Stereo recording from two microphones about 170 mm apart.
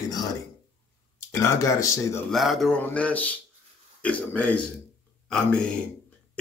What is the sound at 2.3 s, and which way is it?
Speech, centre (ahead or behind).